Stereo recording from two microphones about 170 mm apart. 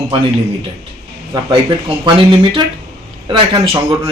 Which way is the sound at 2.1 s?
30° right (ahead or behind).